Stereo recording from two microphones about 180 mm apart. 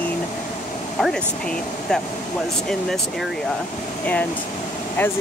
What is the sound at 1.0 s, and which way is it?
Speech, 5° left (ahead or behind).